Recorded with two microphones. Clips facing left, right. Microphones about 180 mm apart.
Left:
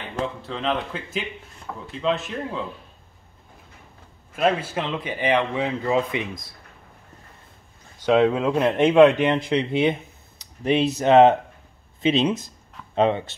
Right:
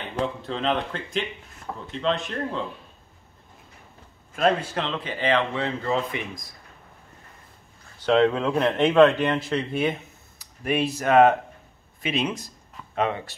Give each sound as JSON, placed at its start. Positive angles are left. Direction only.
{"t": 0.4, "sound": "speech", "side_deg": 0}
{"t": 4.4, "sound": "speech", "side_deg": 5}
{"t": 8.0, "sound": "a man's voice", "side_deg": 10}